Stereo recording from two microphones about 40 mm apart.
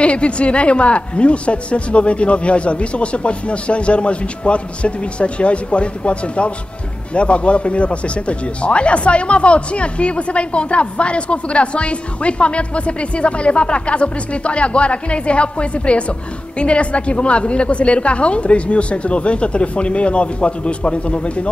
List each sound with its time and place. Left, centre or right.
0.0 s speech: left